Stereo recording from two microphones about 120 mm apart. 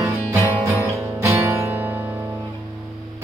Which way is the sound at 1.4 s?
20° right (ahead or behind).